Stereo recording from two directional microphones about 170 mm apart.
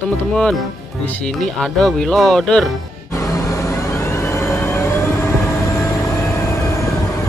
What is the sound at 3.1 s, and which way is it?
Vehicle, 15° left (ahead or behind).